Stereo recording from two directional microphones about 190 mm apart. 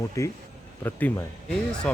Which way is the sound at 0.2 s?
15° left (ahead or behind).